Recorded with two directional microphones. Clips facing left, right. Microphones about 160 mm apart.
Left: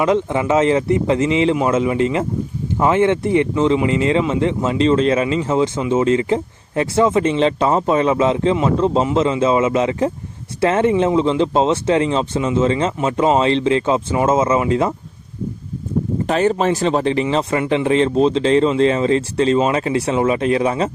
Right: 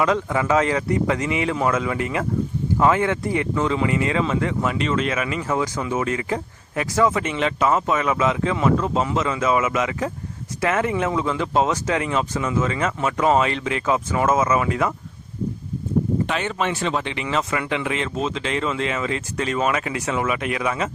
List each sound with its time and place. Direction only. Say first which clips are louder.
0.0 s speech: left 4 dB; 20° left (ahead or behind)
16.2 s speech: left 8 dB; 40° left (ahead or behind)